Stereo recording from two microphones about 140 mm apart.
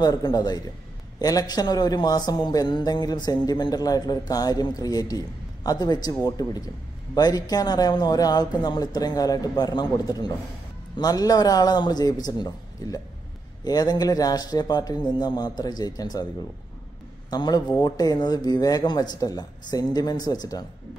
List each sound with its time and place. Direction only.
0.0 s a man's voice: 30° left (ahead or behind)
17.3 s a man's voice: 30° left (ahead or behind)